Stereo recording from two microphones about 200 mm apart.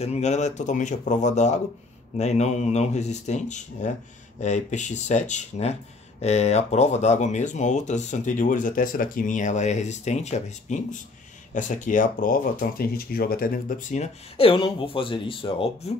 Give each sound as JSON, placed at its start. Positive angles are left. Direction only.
{"t": 0.0, "sound": "speech", "side_deg": 35}